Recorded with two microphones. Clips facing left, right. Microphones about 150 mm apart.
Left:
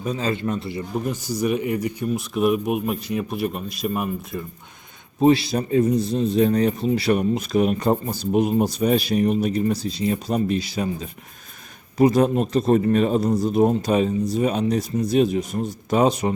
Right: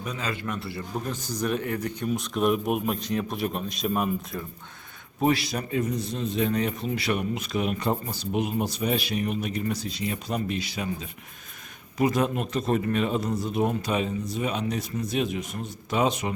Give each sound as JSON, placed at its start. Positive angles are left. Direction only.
{"t": 0.0, "sound": "speech", "side_deg": 30}
{"t": 5.2, "sound": "a man's voice", "side_deg": 30}